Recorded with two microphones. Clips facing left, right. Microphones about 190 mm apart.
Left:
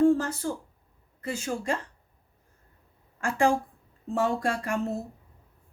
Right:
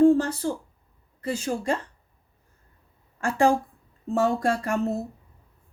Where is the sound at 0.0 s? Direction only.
30° right (ahead or behind).